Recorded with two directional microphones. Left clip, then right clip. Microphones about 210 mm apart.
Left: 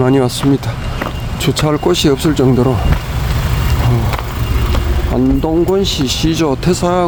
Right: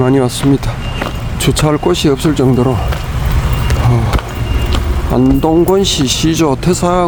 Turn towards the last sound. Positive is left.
turn(degrees=-5)  # may be behind; listen again after turning